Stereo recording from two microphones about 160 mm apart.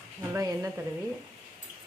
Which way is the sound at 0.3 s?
20° right (ahead or behind).